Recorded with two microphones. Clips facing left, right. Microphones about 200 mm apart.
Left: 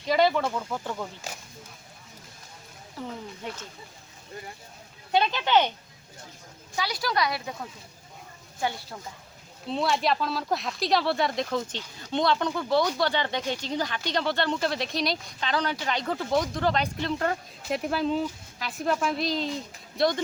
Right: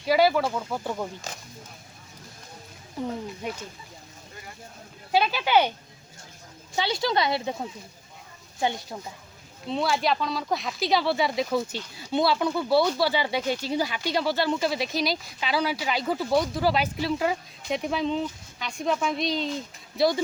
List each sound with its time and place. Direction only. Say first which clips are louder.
0.0 s speech: right 2 dB; 5° right (ahead or behind)
3.0 s speech: right 6 dB; 20° right (ahead or behind)
5.1 s speech: right 1 dB; 5° right (ahead or behind)
6.7 s a woman's voice: right 3 dB; 25° right (ahead or behind)
9.6 s speech: right 1 dB; centre (ahead or behind)